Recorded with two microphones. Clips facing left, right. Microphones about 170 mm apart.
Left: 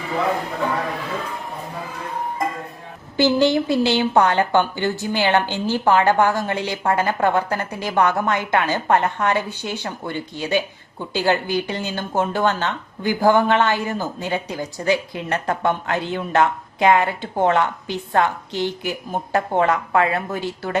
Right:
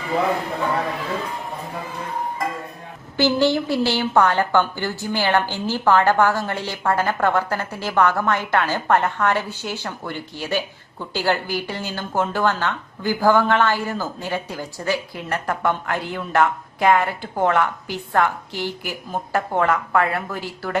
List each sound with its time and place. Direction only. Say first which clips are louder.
3.2 s a woman's voice: left 2 dB; 15° left (ahead or behind)